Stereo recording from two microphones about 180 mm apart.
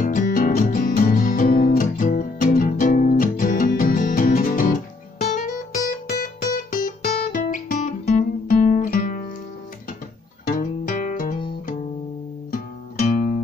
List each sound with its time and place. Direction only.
0.0 s music: 50° left (ahead or behind)
5.9 s music: 50° left (ahead or behind)
7.3 s guitar: 50° left (ahead or behind)
10.5 s music: 50° left (ahead or behind)
12.4 s music: 50° left (ahead or behind)